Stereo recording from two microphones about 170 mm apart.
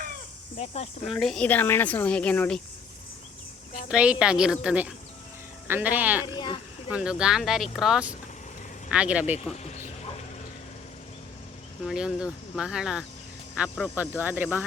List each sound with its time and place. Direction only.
0.5 s speech: 40° left (ahead or behind)
1.0 s speech: centre (ahead or behind)
3.8 s speech: 5° right (ahead or behind)
6.2 s speech: 25° left (ahead or behind)
6.9 s speech: 5° right (ahead or behind)
9.5 s speech: 45° left (ahead or behind)
11.9 s speech: 5° right (ahead or behind)